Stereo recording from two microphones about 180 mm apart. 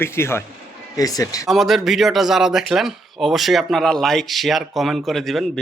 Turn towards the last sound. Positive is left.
turn(degrees=0)  # may be behind; listen again after turning